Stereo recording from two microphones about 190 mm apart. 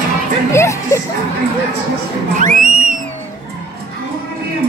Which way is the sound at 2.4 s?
45° right (ahead or behind).